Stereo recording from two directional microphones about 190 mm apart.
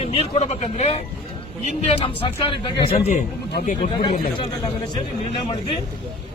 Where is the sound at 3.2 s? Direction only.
40° left (ahead or behind).